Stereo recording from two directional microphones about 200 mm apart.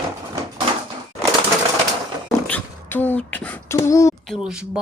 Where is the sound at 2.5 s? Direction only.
10° left (ahead or behind).